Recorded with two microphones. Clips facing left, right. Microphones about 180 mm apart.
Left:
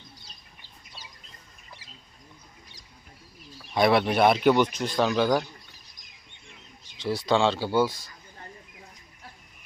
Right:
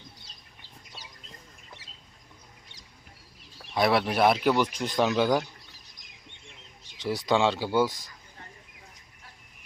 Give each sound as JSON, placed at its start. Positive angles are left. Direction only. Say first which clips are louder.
{"t": 3.8, "sound": "speech", "louder": "left 2 dB", "side_deg": 0}
{"t": 7.0, "sound": "speech", "louder": "left 1 dB", "side_deg": -15}